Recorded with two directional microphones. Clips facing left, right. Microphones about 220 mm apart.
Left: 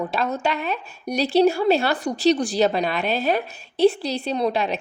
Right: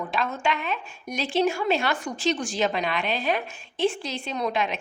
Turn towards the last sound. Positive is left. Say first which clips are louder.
# left 5 dB
turn(degrees=35)  # may be behind; listen again after turning